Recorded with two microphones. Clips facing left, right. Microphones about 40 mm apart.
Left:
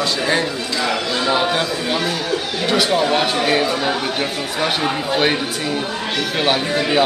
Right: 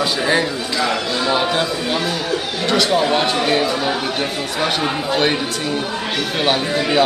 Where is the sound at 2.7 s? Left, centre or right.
Centre.